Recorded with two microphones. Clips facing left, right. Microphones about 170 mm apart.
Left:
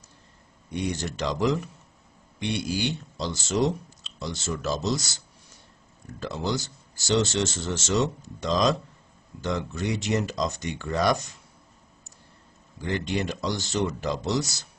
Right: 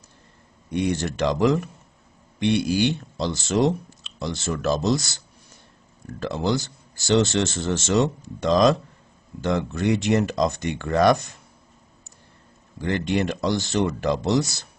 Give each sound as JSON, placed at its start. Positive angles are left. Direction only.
{"t": 0.7, "sound": "speech", "side_deg": -60}
{"t": 12.8, "sound": "speech", "side_deg": -60}